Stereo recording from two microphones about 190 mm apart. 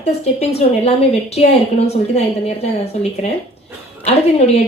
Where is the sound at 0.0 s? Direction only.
30° left (ahead or behind).